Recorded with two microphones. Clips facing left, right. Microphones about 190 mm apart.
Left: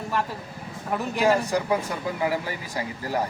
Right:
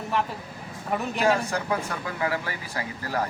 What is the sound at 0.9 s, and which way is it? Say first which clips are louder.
Speech: left 1 dB; 10° left (ahead or behind).